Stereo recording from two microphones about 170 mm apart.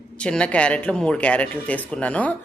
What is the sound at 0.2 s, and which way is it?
Speech, 5° left (ahead or behind).